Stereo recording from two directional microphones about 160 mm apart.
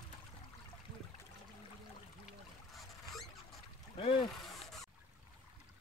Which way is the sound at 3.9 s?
30° left (ahead or behind).